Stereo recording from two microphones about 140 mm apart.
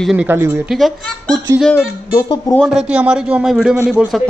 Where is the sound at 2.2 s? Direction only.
30° left (ahead or behind).